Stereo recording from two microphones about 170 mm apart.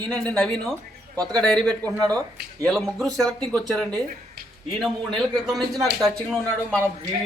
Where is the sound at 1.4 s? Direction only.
5° left (ahead or behind).